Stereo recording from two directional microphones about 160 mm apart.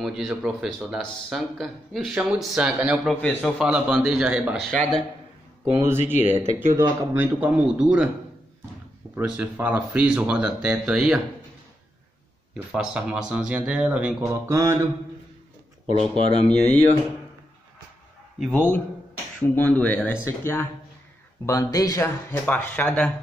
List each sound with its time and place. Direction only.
0.0 s speech: centre (ahead or behind)
3.2 s speech: 5° left (ahead or behind)
3.5 s speech: 5° right (ahead or behind)
5.7 s speech: 20° right (ahead or behind)
9.1 s speech: 10° right (ahead or behind)
12.5 s speech: 5° right (ahead or behind)
15.9 s speech: 30° right (ahead or behind)
16.4 s speech: 10° left (ahead or behind)
19.4 s speech: 10° left (ahead or behind)
22.3 s speech: 10° left (ahead or behind)